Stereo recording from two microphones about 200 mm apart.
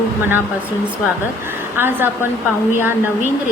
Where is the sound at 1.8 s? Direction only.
10° right (ahead or behind).